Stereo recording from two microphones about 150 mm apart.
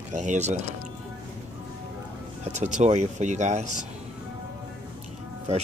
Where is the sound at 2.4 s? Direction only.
50° right (ahead or behind).